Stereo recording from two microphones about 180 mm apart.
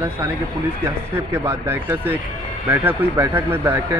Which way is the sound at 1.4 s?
15° right (ahead or behind).